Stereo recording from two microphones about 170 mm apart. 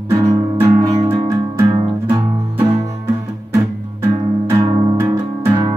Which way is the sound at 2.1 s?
20° right (ahead or behind).